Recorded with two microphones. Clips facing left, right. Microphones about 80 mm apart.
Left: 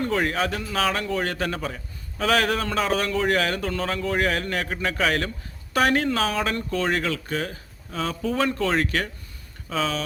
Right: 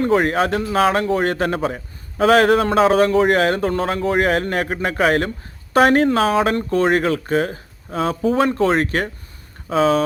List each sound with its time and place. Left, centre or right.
0.0 s speech: right